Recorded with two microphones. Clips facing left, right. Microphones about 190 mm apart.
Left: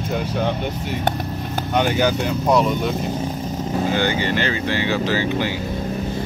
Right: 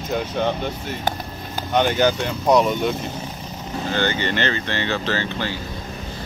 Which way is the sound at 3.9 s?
10° left (ahead or behind).